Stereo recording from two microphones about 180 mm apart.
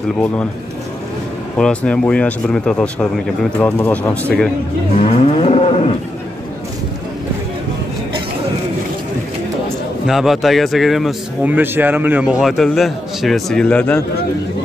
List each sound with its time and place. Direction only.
1.6 s speech: 5° left (ahead or behind)
4.9 s moo: 35° left (ahead or behind)
10.0 s speech: centre (ahead or behind)